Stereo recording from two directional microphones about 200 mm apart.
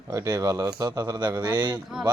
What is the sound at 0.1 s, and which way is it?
A man's voice, 15° right (ahead or behind).